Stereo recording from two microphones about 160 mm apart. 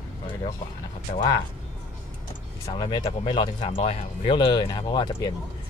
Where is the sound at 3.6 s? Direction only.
40° left (ahead or behind).